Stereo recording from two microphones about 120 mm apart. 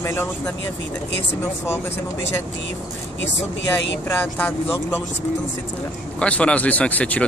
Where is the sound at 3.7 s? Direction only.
15° left (ahead or behind).